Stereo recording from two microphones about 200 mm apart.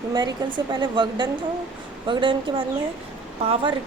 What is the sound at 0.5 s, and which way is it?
Speech, 20° right (ahead or behind).